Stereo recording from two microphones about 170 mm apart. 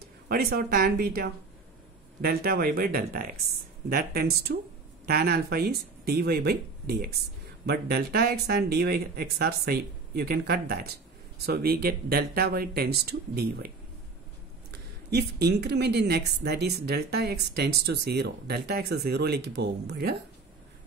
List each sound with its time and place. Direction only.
0.3 s a woman's voice: 60° right (ahead or behind)
14.7 s a woman's voice: 75° right (ahead or behind)